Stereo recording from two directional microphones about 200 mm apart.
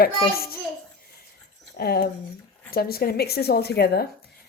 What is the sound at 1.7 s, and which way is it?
Speech, 50° left (ahead or behind).